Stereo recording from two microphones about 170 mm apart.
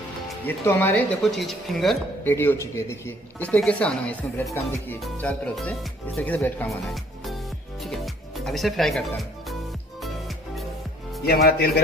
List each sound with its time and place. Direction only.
0.5 s speech: 10° left (ahead or behind)
2.2 s speech: 15° left (ahead or behind)
7.8 s music: centre (ahead or behind)
11.4 s speech: 70° left (ahead or behind)